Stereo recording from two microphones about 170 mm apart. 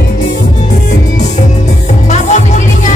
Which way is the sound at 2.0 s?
45° left (ahead or behind).